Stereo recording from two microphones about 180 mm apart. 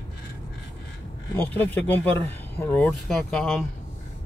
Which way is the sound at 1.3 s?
10° left (ahead or behind).